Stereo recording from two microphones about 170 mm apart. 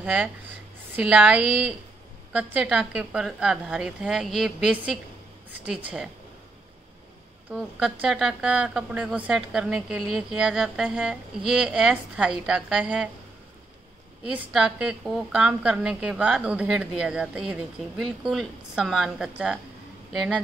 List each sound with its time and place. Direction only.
0.0 s a woman's voice: 5° right (ahead or behind)
7.5 s a woman's voice: 5° right (ahead or behind)
14.2 s a woman's voice: 5° right (ahead or behind)